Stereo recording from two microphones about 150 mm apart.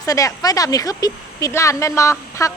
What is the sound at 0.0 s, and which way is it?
Speech, 25° left (ahead or behind).